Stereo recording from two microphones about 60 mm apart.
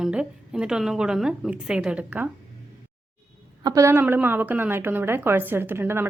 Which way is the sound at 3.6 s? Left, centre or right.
Right.